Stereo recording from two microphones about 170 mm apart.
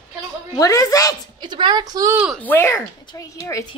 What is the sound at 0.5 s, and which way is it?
Speech, 20° left (ahead or behind).